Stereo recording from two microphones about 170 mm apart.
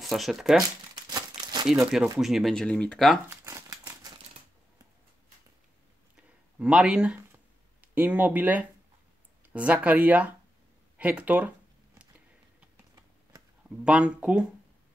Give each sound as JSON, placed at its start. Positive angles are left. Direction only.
{"t": 0.0, "sound": "speech", "side_deg": 0}
{"t": 1.1, "sound": "crumpling", "side_deg": -25}
{"t": 1.7, "sound": "speech", "side_deg": -5}
{"t": 3.3, "sound": "crumpling", "side_deg": -15}
{"t": 6.1, "sound": "a sound", "side_deg": -5}
{"t": 7.8, "sound": "speech", "side_deg": -10}
{"t": 11.0, "sound": "a sound", "side_deg": -10}
{"t": 12.7, "sound": "typing", "side_deg": -20}
{"t": 13.7, "sound": "speech", "side_deg": -5}